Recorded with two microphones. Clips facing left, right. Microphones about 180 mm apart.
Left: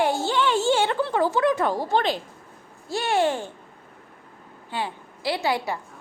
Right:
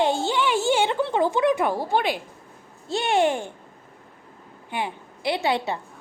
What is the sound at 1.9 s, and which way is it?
A child's voice, 10° right (ahead or behind).